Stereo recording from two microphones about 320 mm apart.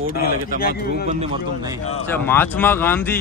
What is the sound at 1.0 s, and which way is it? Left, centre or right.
Speech, centre.